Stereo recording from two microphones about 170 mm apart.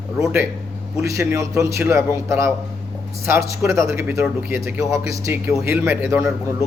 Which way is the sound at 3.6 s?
15° right (ahead or behind).